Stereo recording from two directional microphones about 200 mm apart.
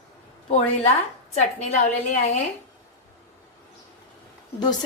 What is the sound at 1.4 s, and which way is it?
Speech, 35° left (ahead or behind).